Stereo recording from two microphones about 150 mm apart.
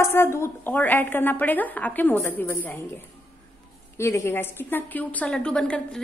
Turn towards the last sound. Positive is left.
turn(degrees=5)  # may be behind; listen again after turning